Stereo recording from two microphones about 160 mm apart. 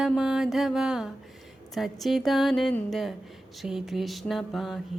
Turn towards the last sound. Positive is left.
turn(degrees=0)  # may be behind; listen again after turning